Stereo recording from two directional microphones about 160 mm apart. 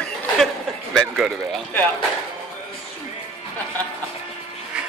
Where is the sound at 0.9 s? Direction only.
Centre (ahead or behind).